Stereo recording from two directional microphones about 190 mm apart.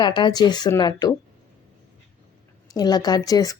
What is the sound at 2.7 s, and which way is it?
Speech, 20° left (ahead or behind).